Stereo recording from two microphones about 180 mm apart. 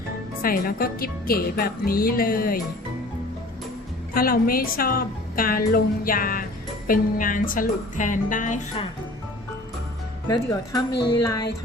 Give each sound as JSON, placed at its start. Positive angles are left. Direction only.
{"t": 0.4, "sound": "a woman's voice", "side_deg": 55}
{"t": 4.1, "sound": "a woman's voice", "side_deg": 55}
{"t": 10.2, "sound": "speech", "side_deg": 20}